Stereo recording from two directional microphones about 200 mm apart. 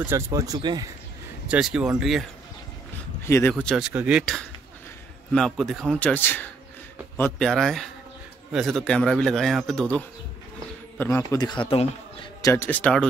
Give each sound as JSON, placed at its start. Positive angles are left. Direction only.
{"t": 0.0, "sound": "speech", "side_deg": -15}
{"t": 1.5, "sound": "speech", "side_deg": -5}
{"t": 3.3, "sound": "a man's voice", "side_deg": 10}